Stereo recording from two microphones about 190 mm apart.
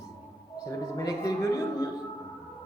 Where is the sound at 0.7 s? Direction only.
15° left (ahead or behind).